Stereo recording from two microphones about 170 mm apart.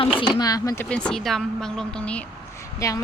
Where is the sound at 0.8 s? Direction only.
5° left (ahead or behind).